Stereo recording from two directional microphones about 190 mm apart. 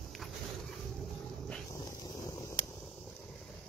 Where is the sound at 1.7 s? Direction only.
15° left (ahead or behind).